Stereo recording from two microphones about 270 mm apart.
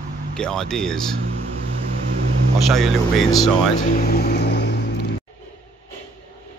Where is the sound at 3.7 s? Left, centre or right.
Left.